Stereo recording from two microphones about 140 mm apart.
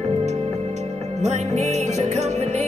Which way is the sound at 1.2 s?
55° right (ahead or behind).